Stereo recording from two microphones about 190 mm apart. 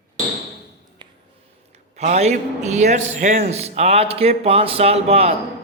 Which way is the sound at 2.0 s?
35° right (ahead or behind).